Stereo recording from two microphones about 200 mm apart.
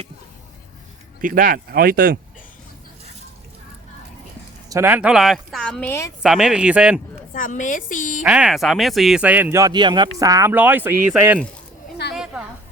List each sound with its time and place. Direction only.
1.2 s speech: 45° right (ahead or behind)
4.7 s a woman's voice: 10° right (ahead or behind); by 6.1 s 10° left (ahead or behind)
6.2 s a woman's voice: centre (ahead or behind)
7.3 s a woman's voice: 40° left (ahead or behind)
8.2 s speech: 5° right (ahead or behind)
12.1 s a sound: 5° right (ahead or behind)